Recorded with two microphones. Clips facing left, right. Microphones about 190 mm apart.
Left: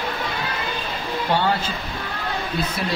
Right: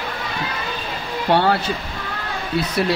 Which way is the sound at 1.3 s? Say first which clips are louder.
Right 5 dB; 70° right (ahead or behind).